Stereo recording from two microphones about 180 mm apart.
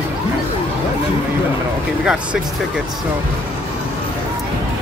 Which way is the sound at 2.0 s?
5° right (ahead or behind).